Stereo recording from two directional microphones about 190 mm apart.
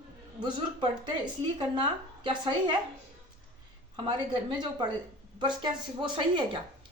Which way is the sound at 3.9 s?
25° right (ahead or behind).